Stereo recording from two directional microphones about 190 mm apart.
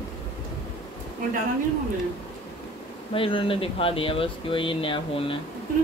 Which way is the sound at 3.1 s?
30° left (ahead or behind).